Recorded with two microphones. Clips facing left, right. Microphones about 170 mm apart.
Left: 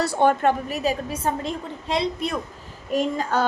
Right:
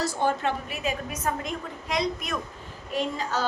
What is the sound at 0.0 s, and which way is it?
Speech, 65° left (ahead or behind).